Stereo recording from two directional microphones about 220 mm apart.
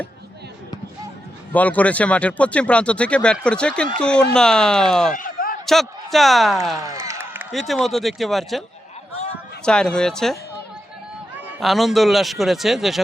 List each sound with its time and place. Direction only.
1.5 s speech: 5° left (ahead or behind)
5.1 s a sound: 40° left (ahead or behind)
5.6 s speech: centre (ahead or behind)
6.7 s a sound: 15° right (ahead or behind)
7.5 s speech: centre (ahead or behind)
9.6 s speech: 5° left (ahead or behind)
11.3 s speech: centre (ahead or behind)